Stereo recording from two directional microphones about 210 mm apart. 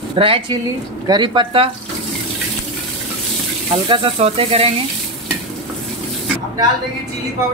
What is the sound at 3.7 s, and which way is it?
Speech, 25° right (ahead or behind).